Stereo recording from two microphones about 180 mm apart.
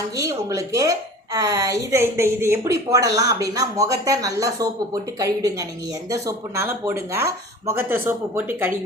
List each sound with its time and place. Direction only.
0.2 s a woman's voice: 20° right (ahead or behind)